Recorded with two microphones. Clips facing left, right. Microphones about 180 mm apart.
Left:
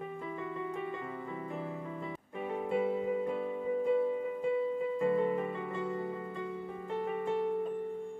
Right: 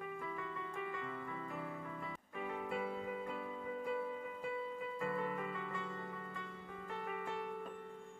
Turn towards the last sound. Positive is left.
turn(degrees=25)  # may be behind; listen again after turning